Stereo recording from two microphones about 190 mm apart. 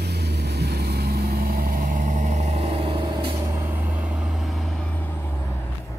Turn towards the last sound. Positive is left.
turn(degrees=5)  # may be behind; listen again after turning